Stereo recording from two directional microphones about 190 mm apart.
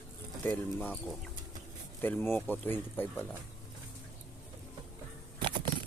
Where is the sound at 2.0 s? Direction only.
10° left (ahead or behind).